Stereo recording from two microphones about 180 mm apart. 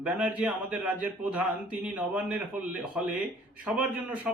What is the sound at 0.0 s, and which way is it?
Speech, 5° right (ahead or behind).